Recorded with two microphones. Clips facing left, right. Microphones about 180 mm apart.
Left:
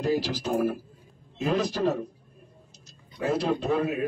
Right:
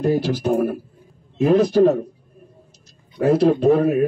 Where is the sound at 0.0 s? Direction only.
55° right (ahead or behind).